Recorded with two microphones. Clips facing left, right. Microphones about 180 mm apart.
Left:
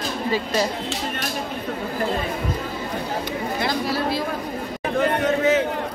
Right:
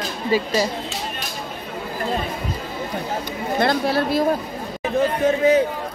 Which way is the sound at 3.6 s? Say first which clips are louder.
Right 6 dB; 55° right (ahead or behind).